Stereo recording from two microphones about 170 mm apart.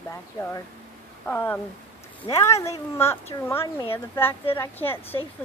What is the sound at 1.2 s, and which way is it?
Speech, 10° left (ahead or behind).